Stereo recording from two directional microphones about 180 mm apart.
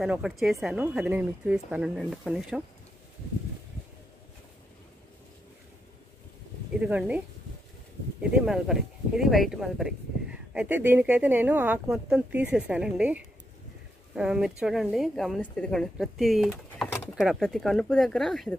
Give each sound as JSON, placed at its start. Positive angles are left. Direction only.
{"t": 0.0, "sound": "a woman's voice", "side_deg": -5}
{"t": 6.8, "sound": "a woman's voice", "side_deg": -10}